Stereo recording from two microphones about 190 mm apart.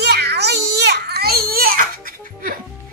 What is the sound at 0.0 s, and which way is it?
Baby cry, 60° right (ahead or behind).